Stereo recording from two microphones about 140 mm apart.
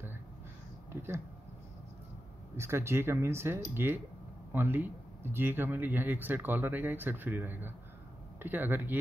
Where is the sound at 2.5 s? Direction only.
20° right (ahead or behind).